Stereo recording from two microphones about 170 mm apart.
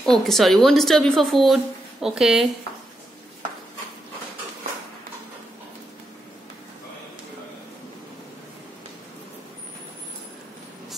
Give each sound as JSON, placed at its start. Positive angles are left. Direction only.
{"t": 0.0, "sound": "speech", "side_deg": 0}